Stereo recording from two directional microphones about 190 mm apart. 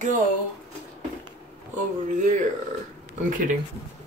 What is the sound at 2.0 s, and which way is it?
Speech, 40° right (ahead or behind).